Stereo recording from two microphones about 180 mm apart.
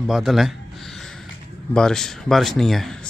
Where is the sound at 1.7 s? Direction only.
5° left (ahead or behind).